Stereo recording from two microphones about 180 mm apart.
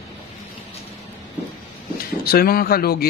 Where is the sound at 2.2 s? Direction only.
55° left (ahead or behind).